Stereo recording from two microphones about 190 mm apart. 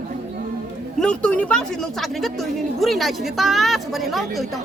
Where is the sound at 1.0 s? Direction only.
5° left (ahead or behind).